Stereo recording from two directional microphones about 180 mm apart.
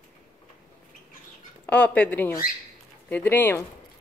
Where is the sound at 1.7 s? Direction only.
10° left (ahead or behind).